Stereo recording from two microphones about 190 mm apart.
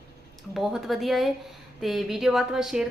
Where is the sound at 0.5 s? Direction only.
5° right (ahead or behind).